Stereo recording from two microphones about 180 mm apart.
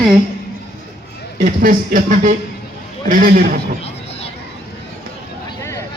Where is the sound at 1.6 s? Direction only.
50° right (ahead or behind).